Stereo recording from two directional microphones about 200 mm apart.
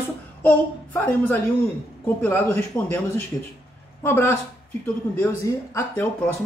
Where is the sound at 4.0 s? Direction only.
10° left (ahead or behind).